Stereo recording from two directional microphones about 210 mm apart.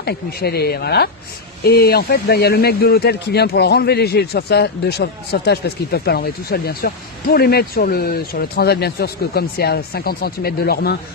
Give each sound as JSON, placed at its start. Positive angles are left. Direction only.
{"t": 0.0, "sound": "speech", "side_deg": 50}